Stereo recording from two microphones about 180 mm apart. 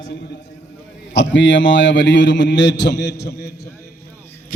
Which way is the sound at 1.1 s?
85° left.